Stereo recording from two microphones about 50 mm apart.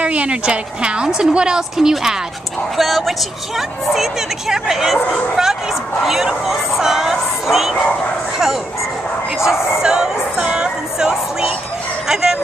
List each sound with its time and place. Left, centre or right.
0.0 s a woman's voice: right
2.8 s a woman's voice: centre
9.8 s music: centre
12.1 s a woman's voice: centre